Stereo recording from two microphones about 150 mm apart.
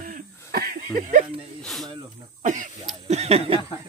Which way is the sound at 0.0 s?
75° right (ahead or behind).